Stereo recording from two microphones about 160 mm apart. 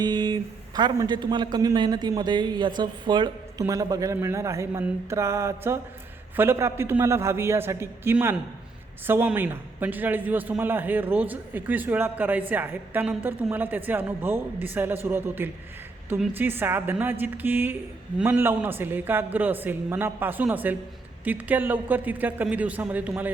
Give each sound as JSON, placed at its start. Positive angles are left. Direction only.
{"t": 0.0, "sound": "a man's voice", "side_deg": -25}